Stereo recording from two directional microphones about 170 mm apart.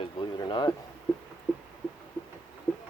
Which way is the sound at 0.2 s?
25° left (ahead or behind).